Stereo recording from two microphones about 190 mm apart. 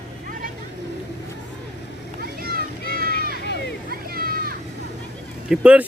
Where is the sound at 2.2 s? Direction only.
50° right (ahead or behind).